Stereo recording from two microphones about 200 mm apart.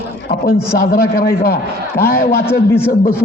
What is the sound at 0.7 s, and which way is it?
A man's voice, 45° left (ahead or behind).